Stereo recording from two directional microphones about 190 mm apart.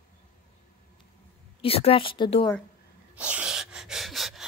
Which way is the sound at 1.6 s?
30° left (ahead or behind).